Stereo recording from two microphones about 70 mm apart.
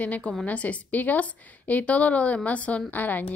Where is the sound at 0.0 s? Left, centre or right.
Left.